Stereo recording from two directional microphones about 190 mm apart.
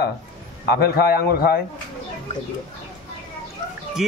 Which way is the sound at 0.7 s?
55° left (ahead or behind).